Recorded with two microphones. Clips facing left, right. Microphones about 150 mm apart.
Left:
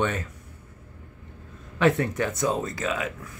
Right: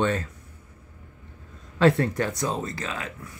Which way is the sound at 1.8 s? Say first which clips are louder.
Right 2 dB; 20° left (ahead or behind).